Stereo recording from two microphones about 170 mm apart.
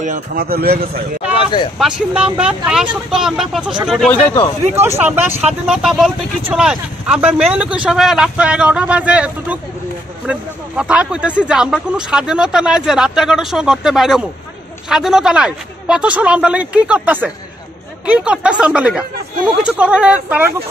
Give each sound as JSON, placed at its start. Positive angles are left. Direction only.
{"t": 0.0, "sound": "speech", "side_deg": -50}
{"t": 1.3, "sound": "a sound", "side_deg": 30}
{"t": 1.8, "sound": "speech", "side_deg": -5}
{"t": 4.7, "sound": "speech", "side_deg": -15}
{"t": 10.8, "sound": "speech", "side_deg": -5}